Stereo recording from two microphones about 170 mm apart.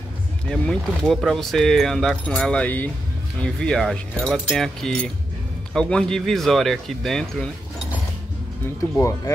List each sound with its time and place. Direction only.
0.5 s speech: centre (ahead or behind)
8.9 s speech: 15° left (ahead or behind)